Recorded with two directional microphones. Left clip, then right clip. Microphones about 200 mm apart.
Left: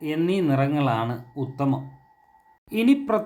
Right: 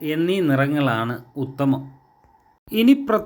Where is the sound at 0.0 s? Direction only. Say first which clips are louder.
Right 3 dB; 10° right (ahead or behind).